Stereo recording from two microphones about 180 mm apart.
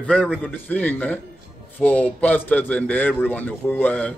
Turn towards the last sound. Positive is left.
turn(degrees=10)  # may be behind; listen again after turning